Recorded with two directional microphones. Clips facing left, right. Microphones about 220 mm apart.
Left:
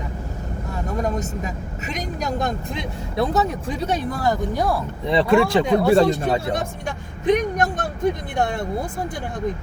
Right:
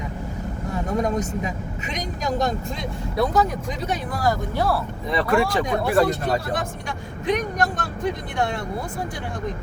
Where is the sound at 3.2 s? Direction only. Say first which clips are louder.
Even; 30° left (ahead or behind).